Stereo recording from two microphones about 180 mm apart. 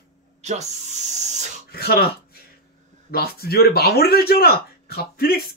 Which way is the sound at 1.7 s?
60° left (ahead or behind).